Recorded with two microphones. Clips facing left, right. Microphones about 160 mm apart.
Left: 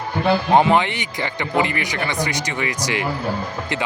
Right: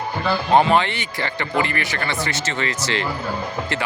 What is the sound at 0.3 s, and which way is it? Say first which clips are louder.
A man's voice: left 1 dB; 15° left (ahead or behind).